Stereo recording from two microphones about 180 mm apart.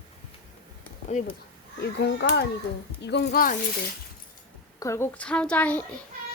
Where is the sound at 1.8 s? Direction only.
75° left (ahead or behind); by 3.6 s 55° left (ahead or behind).